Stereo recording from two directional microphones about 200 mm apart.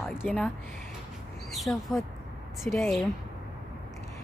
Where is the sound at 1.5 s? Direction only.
Centre (ahead or behind).